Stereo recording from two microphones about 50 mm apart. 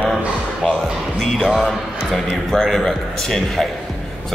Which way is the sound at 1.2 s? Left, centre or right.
Centre.